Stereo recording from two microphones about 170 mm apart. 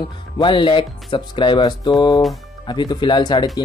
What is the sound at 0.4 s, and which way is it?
Speech, 30° left (ahead or behind).